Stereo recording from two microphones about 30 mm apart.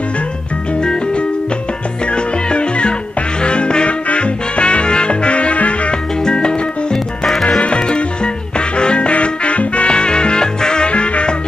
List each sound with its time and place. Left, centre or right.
0.7 s music: left
6.2 s music: left
10.9 s music: left